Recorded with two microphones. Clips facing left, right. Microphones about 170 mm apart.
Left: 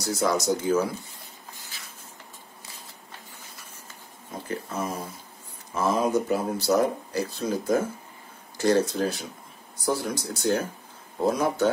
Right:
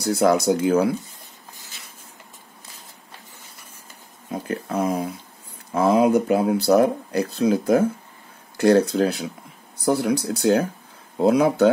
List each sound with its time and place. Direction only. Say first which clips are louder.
0.0 s speech: right 7 dB; 60° right (ahead or behind)
4.3 s a sound: right 6 dB; 65° right (ahead or behind)
5.7 s speech: right 7 dB; 60° right (ahead or behind)